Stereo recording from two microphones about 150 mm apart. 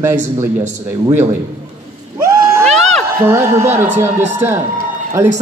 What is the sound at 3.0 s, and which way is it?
A man's voice, 15° right (ahead or behind).